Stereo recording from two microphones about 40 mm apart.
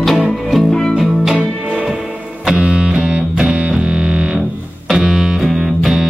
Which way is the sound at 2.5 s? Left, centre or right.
Right.